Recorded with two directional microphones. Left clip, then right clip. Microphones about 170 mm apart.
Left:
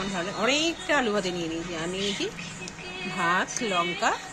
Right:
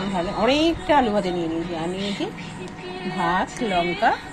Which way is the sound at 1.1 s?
15° left (ahead or behind).